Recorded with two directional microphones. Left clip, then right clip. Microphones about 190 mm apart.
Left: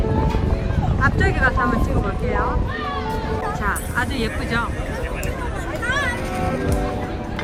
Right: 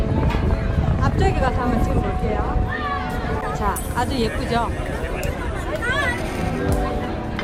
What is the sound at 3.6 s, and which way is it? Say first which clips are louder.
Speech: right 1 dB; 10° right (ahead or behind).